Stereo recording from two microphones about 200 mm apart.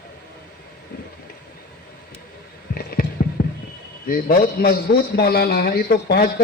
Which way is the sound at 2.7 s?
50° left (ahead or behind).